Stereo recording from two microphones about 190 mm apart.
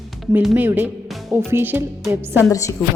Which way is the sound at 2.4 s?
15° left (ahead or behind).